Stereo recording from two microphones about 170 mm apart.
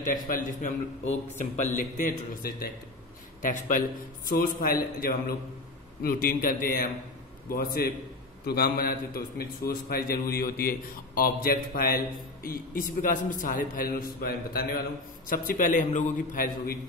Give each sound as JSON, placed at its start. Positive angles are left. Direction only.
{"t": 0.0, "sound": "a man's voice", "side_deg": 50}
{"t": 6.0, "sound": "a man's voice", "side_deg": 55}